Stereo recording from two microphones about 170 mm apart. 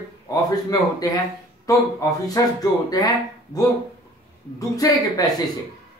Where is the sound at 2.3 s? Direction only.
20° left (ahead or behind).